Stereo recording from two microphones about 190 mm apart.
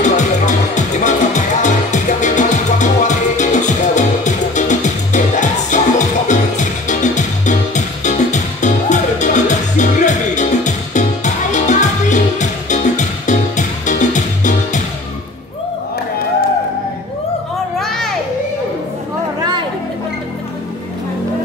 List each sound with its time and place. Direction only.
0.0 s music: 40° left (ahead or behind)
17.7 s children playing: centre (ahead or behind)